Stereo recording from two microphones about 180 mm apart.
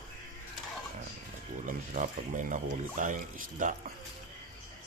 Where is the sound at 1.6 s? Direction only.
45° right (ahead or behind).